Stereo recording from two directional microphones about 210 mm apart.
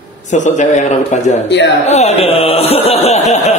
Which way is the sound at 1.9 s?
30° left (ahead or behind).